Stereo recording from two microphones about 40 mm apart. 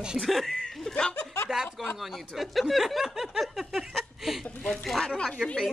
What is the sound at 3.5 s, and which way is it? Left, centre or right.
Laughter, centre.